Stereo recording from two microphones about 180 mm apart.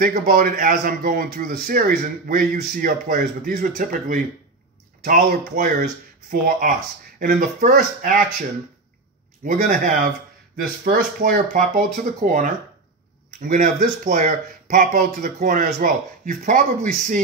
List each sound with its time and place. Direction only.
0.0 s speech: 50° right (ahead or behind)
9.4 s speech: 50° right (ahead or behind)